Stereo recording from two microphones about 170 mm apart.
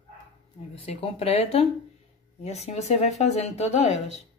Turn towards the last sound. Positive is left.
turn(degrees=40)  # may be behind; listen again after turning